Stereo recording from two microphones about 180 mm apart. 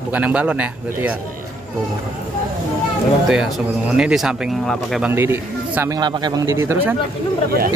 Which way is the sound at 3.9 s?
5° right (ahead or behind).